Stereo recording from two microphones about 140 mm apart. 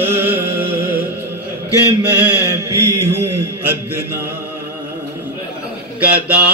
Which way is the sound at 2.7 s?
20° right (ahead or behind).